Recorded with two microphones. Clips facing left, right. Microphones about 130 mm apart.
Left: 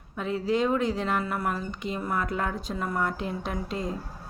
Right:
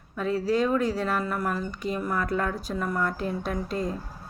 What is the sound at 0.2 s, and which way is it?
Speech, 20° left (ahead or behind).